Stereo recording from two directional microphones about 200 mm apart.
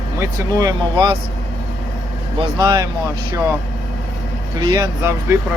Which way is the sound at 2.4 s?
20° right (ahead or behind).